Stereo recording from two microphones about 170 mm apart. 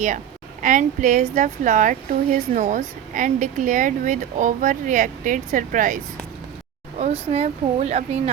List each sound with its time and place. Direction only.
0.6 s a woman's voice: 50° right (ahead or behind)
7.0 s speech: 35° right (ahead or behind)